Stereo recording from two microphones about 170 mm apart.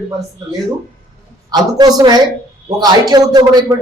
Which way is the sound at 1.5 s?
25° right (ahead or behind).